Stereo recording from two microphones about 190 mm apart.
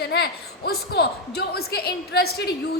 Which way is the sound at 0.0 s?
60° left (ahead or behind).